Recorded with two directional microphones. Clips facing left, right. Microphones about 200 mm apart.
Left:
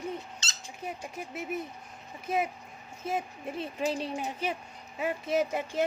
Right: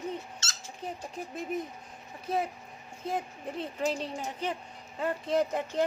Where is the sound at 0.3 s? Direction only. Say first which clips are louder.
Even; 15° left (ahead or behind).